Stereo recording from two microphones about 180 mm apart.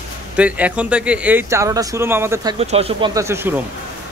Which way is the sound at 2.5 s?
35° right (ahead or behind).